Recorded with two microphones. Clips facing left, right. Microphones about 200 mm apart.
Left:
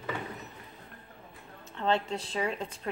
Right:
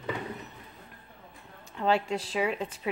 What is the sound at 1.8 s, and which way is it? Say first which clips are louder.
A woman's voice: right 2 dB; 10° right (ahead or behind).